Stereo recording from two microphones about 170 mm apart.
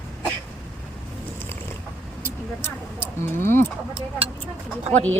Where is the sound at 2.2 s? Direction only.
15° left (ahead or behind).